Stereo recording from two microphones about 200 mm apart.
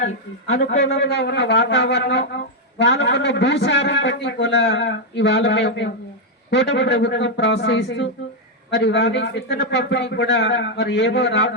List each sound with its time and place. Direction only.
0.4 s a man's voice: 70° left (ahead or behind)